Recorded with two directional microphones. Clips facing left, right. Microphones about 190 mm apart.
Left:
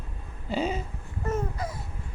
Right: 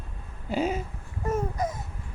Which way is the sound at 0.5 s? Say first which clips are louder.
Right 1 dB; 5° right (ahead or behind).